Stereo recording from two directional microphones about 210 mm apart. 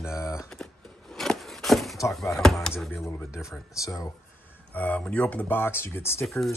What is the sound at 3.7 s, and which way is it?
Speech, 15° left (ahead or behind).